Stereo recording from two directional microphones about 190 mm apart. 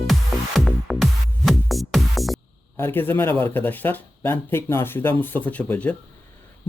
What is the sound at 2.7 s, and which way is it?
A man's voice, 10° left (ahead or behind).